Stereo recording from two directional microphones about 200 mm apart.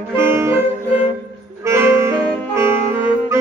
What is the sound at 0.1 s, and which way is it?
Music, 10° right (ahead or behind).